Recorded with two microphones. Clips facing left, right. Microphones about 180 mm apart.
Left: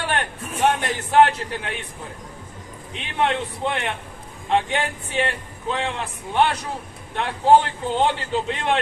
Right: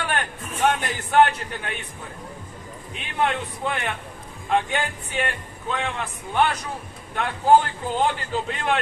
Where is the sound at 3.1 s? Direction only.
25° left (ahead or behind).